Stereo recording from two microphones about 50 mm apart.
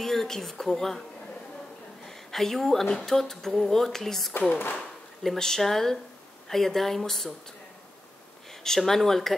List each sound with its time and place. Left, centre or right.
0.0 s speech: centre
2.0 s a woman's voice: centre
4.4 s speech: left
4.7 s speech: centre
8.5 s speech: centre